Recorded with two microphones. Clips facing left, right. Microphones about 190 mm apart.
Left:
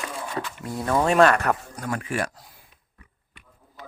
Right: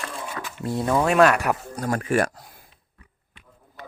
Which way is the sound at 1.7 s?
40° right (ahead or behind).